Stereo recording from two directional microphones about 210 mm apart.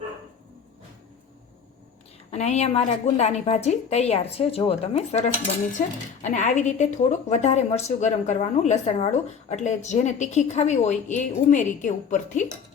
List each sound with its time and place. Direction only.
2.3 s a woman's voice: 30° left (ahead or behind)